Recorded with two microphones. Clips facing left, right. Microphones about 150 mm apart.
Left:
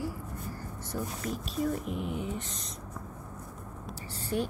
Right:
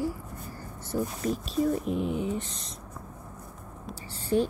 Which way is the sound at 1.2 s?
35° right (ahead or behind).